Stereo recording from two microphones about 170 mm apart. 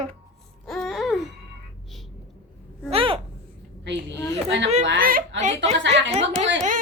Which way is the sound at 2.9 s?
35° right (ahead or behind).